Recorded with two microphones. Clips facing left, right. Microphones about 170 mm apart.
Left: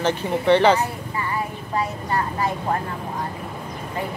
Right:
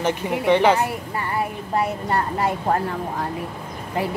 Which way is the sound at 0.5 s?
10° right (ahead or behind).